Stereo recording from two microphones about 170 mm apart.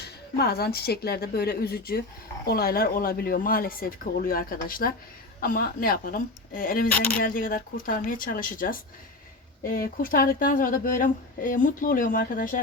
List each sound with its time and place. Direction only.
0.0 s speech: 70° left (ahead or behind)